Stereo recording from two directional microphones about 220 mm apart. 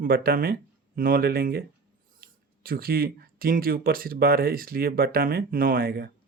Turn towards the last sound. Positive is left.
turn(degrees=-45)  # may be behind; listen again after turning